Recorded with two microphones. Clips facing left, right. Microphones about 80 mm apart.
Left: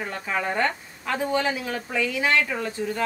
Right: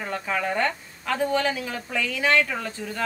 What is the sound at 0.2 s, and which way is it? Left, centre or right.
A woman's voice, centre.